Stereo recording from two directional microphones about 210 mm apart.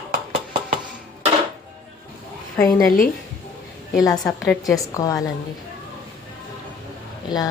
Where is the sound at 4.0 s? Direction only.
15° left (ahead or behind).